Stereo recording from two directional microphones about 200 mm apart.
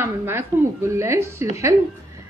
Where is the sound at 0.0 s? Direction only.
10° right (ahead or behind).